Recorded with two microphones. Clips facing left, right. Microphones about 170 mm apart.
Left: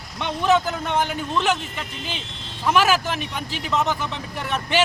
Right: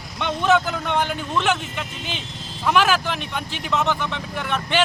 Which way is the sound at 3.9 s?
40° left (ahead or behind).